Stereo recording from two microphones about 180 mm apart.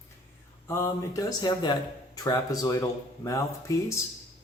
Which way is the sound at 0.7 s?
15° left (ahead or behind).